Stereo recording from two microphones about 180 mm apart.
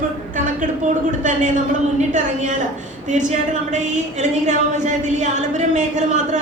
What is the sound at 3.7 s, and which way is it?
A woman's voice, 40° right (ahead or behind).